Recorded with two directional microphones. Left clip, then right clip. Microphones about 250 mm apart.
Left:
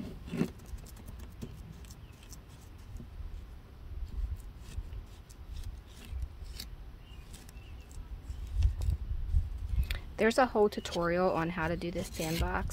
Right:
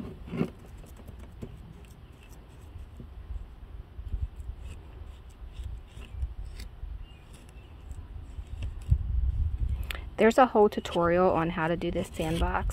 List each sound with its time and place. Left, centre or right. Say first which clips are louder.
9.8 s speech: right 6 dB; right